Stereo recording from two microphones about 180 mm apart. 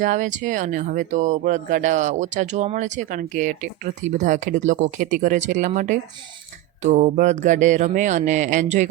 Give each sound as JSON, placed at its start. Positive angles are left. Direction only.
{"t": 0.0, "sound": "speech", "side_deg": -45}